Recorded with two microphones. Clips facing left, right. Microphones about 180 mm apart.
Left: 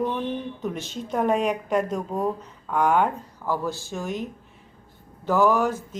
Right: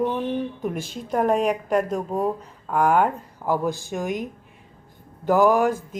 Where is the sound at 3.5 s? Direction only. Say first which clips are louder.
Right 4 dB; 15° right (ahead or behind).